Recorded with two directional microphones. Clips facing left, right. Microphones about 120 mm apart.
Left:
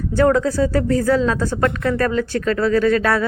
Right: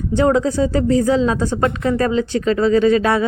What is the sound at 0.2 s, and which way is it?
Speech, 20° right (ahead or behind).